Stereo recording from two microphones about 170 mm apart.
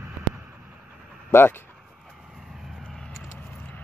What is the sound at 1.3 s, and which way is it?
Speech, 15° left (ahead or behind).